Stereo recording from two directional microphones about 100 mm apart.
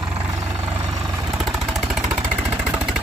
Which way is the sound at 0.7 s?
35° right (ahead or behind).